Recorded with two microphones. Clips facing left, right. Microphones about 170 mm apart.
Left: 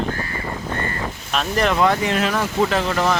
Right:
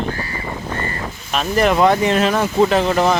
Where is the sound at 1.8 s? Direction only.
25° right (ahead or behind).